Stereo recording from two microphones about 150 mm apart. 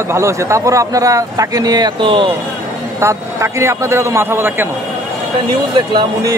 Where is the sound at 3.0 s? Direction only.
20° right (ahead or behind).